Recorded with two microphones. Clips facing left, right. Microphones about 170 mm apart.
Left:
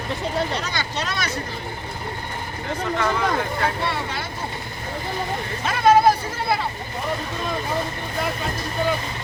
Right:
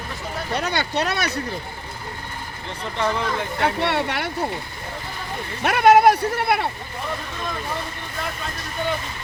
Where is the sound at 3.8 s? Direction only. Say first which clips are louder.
Right 4 dB; 70° right (ahead or behind).